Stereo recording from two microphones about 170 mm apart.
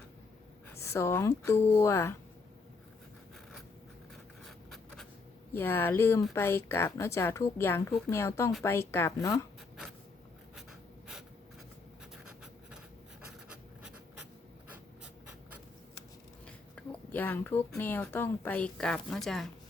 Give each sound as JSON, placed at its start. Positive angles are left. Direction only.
{"t": 0.8, "sound": "a woman's voice", "side_deg": 15}
{"t": 4.4, "sound": "writing", "side_deg": 0}
{"t": 5.5, "sound": "a woman's voice", "side_deg": 15}
{"t": 13.5, "sound": "writing", "side_deg": -5}
{"t": 16.5, "sound": "speech", "side_deg": 10}